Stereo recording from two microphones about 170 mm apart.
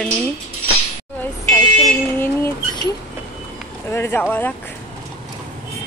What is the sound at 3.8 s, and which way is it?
Speech, 15° left (ahead or behind).